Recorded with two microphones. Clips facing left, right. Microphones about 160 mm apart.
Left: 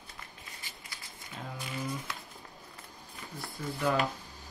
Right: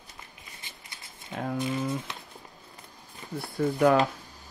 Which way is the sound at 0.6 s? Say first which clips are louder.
Even; 20° right (ahead or behind).